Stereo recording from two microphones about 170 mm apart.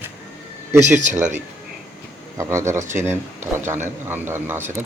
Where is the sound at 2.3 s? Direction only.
15° right (ahead or behind).